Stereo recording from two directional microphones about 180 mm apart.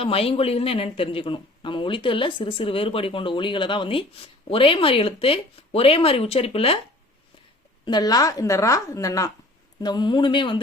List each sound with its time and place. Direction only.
0.0 s speech: 30° left (ahead or behind)
7.9 s a woman's voice: 20° left (ahead or behind)